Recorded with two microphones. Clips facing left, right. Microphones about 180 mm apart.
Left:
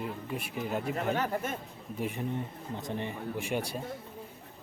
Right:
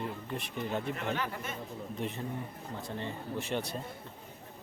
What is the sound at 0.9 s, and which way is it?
Speech, 45° left (ahead or behind).